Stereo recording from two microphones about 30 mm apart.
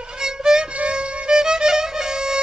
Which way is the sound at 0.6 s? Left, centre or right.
Right.